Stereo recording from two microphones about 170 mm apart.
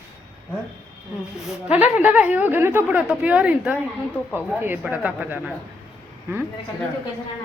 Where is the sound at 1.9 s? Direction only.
10° right (ahead or behind).